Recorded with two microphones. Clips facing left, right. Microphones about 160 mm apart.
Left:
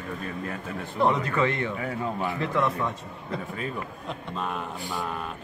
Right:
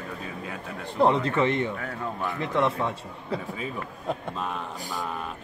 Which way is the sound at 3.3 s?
5° right (ahead or behind).